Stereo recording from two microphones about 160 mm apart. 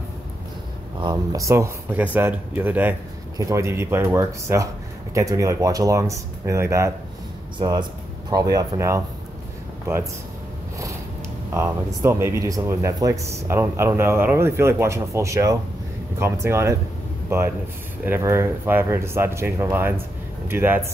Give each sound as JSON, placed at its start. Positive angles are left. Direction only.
{"t": 0.9, "sound": "speech", "side_deg": -25}
{"t": 11.5, "sound": "speech", "side_deg": -15}